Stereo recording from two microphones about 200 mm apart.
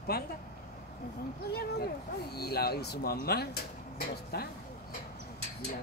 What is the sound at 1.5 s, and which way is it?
Speech, 50° left (ahead or behind).